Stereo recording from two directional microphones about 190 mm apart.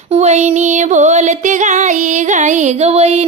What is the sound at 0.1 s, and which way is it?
Speech, 35° right (ahead or behind).